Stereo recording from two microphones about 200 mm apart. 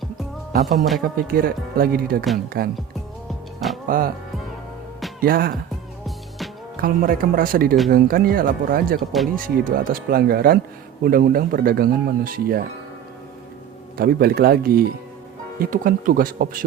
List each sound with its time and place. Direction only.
0.5 s speech: 40° right (ahead or behind)
3.8 s speech: 45° right (ahead or behind)
5.2 s speech: 45° right (ahead or behind)
6.7 s speech: 45° right (ahead or behind)
9.0 s speech: centre (ahead or behind)
9.3 s speech: 45° right (ahead or behind)
13.9 s speech: 50° right (ahead or behind)